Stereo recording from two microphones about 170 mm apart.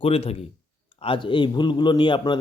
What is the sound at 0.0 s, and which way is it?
A man's voice, 35° left (ahead or behind).